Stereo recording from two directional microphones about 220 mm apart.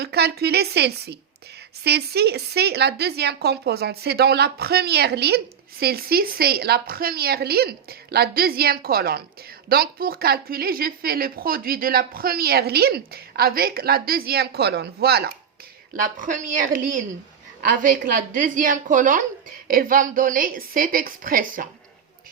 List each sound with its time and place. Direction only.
0.0 s a woman's voice: 45° right (ahead or behind)